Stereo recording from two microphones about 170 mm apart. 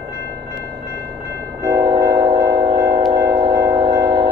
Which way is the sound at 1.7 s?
25° right (ahead or behind).